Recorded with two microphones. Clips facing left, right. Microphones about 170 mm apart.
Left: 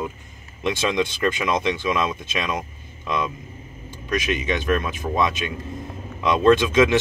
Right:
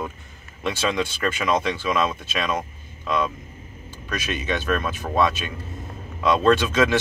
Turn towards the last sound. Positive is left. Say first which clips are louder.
# left 2 dB
turn(degrees=15)  # may be behind; listen again after turning